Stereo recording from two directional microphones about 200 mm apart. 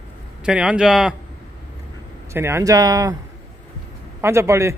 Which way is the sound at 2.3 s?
10° right (ahead or behind).